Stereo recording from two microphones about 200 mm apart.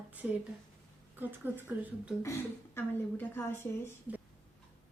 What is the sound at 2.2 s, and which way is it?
A woman's voice, 10° left (ahead or behind).